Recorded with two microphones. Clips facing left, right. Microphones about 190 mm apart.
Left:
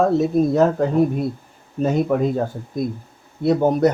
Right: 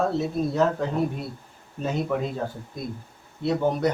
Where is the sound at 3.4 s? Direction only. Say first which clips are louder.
Left 7 dB; 45° left (ahead or behind).